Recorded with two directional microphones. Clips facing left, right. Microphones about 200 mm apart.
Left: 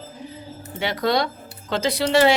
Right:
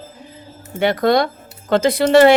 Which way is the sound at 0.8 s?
50° right (ahead or behind).